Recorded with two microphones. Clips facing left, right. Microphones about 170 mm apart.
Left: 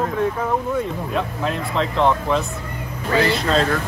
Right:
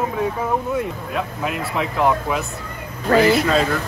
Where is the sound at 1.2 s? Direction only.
10° right (ahead or behind).